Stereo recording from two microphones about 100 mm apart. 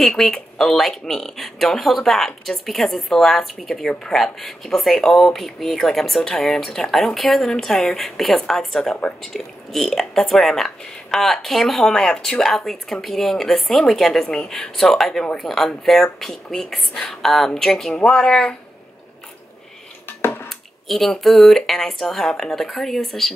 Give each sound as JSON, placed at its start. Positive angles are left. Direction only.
{"t": 0.0, "sound": "speech", "side_deg": 5}
{"t": 20.1, "sound": "drip", "side_deg": 20}
{"t": 20.4, "sound": "speech", "side_deg": 5}